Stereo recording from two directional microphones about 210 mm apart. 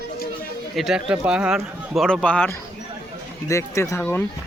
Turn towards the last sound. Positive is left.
turn(degrees=10)  # may be behind; listen again after turning